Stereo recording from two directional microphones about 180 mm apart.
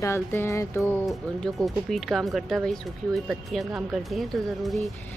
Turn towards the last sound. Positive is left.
turn(degrees=0)  # may be behind; listen again after turning